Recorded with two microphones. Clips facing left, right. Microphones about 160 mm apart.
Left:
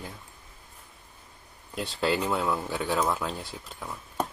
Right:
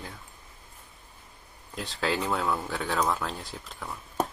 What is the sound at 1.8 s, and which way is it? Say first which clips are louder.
Speech: left 2 dB; 5° left (ahead or behind).